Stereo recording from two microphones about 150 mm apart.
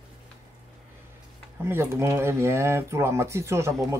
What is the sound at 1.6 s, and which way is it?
Speech, 15° right (ahead or behind).